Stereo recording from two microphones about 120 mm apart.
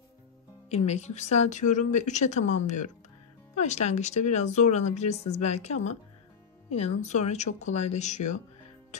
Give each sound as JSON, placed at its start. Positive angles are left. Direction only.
{"t": 0.7, "sound": "speech", "side_deg": 65}